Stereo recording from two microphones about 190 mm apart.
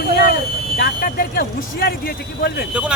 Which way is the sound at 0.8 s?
50° left (ahead or behind).